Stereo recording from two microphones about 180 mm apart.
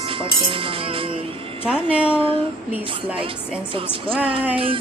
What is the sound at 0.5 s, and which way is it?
Speech, 30° right (ahead or behind).